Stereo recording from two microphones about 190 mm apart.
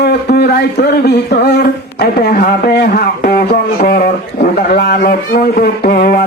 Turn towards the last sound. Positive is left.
turn(degrees=55)  # may be behind; listen again after turning